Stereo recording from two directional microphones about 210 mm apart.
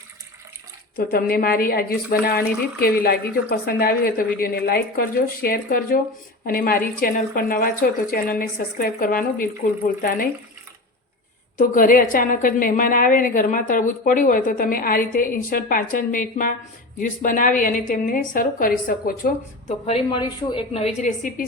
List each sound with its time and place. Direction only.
1.1 s a woman's voice: 45° left (ahead or behind)
11.5 s a woman's voice: 40° left (ahead or behind)
19.6 s a woman's voice: 25° left (ahead or behind)